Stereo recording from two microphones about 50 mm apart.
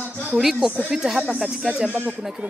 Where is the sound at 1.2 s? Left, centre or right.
Right.